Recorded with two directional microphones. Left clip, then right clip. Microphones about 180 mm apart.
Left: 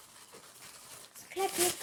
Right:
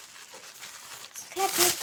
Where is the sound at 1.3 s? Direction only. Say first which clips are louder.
Right 6 dB; centre (ahead or behind).